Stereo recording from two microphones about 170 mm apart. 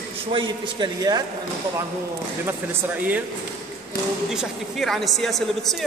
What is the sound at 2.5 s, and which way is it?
Speech, 10° right (ahead or behind).